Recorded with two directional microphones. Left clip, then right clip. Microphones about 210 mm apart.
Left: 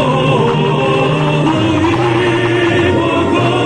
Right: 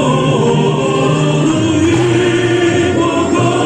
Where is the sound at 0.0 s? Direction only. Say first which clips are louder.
Left 1 dB; 55° right (ahead or behind).